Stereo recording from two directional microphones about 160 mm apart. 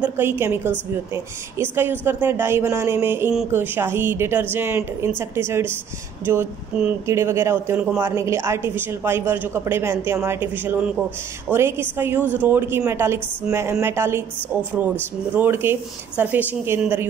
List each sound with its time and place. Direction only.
0.0 s speech: 15° right (ahead or behind)
15.3 s speech: 15° right (ahead or behind)